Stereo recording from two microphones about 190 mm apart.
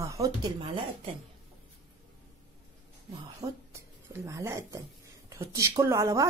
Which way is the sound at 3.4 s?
15° right (ahead or behind).